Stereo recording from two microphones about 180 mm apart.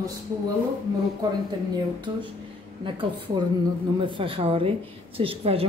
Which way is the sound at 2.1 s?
25° right (ahead or behind).